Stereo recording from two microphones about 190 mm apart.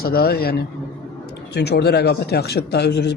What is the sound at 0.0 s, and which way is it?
A man's voice, 55° left (ahead or behind).